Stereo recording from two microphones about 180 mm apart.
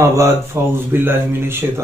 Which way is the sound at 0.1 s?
15° right (ahead or behind).